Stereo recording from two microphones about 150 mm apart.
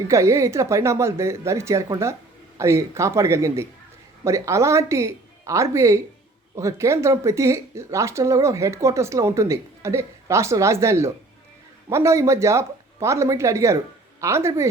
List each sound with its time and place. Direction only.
0.1 s speech: 20° right (ahead or behind)